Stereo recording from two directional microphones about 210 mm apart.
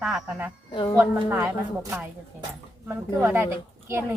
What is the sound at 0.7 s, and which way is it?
Speech, 20° left (ahead or behind).